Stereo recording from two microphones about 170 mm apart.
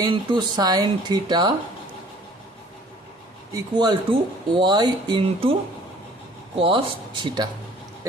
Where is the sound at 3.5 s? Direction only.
25° right (ahead or behind).